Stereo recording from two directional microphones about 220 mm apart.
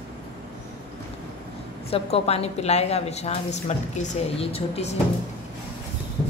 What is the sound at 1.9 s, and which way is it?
A woman's voice, 25° left (ahead or behind).